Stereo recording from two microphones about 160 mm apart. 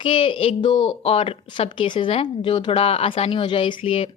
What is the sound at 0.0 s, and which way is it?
A woman's voice, 35° left (ahead or behind).